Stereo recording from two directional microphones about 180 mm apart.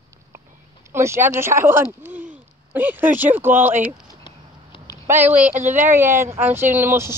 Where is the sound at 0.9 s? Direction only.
15° right (ahead or behind).